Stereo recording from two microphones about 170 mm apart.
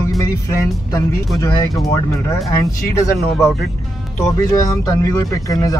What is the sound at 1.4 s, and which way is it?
Speech, 20° left (ahead or behind).